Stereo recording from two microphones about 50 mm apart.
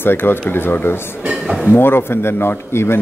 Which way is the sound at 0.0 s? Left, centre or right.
Left.